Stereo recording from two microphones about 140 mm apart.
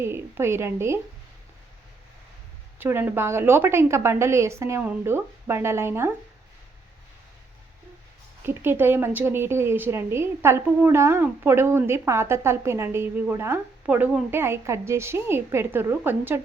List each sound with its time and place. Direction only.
0.0 s a woman's voice: 15° right (ahead or behind)
2.7 s a woman's voice: 15° right (ahead or behind)
8.4 s a woman's voice: 15° right (ahead or behind)